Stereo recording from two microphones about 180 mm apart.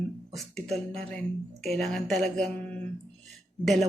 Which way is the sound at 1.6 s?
Centre (ahead or behind).